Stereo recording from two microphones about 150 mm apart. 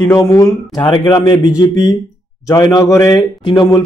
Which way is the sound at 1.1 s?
20° left (ahead or behind).